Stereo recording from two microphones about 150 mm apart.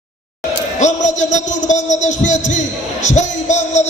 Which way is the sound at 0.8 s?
55° left (ahead or behind).